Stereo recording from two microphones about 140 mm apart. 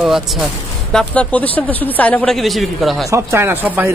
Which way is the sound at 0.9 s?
10° left (ahead or behind).